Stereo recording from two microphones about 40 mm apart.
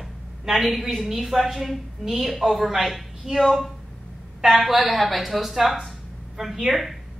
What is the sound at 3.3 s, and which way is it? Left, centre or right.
Speech, centre.